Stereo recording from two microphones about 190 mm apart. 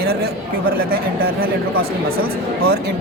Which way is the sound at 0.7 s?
55° right (ahead or behind).